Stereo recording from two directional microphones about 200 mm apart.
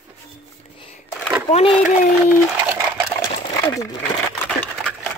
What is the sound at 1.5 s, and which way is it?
Speech, 30° left (ahead or behind).